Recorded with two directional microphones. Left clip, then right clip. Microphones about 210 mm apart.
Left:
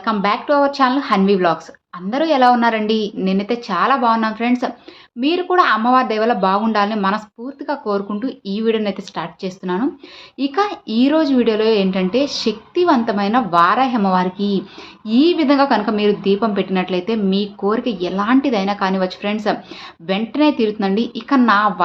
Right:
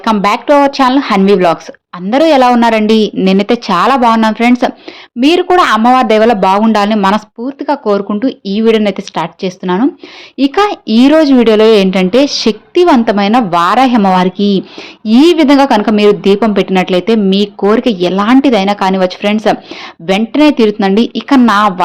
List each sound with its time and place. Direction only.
0.0 s speech: 40° right (ahead or behind)